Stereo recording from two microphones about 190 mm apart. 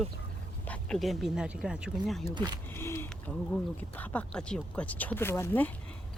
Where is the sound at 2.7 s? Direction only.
15° left (ahead or behind).